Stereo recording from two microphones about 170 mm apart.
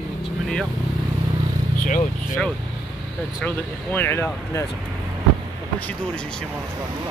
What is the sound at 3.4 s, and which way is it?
Speech, 10° left (ahead or behind).